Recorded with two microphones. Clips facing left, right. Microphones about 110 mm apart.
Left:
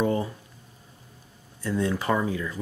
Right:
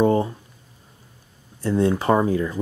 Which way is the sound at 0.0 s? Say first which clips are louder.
Right 7 dB; 35° right (ahead or behind).